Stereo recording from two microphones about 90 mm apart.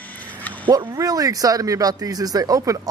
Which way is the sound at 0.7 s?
45° right (ahead or behind).